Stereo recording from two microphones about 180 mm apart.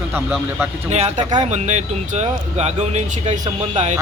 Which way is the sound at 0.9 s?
40° right (ahead or behind).